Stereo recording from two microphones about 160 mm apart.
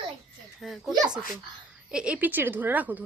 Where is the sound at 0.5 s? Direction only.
Centre (ahead or behind).